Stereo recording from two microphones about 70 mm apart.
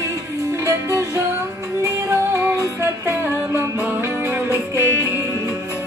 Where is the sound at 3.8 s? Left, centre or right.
Right.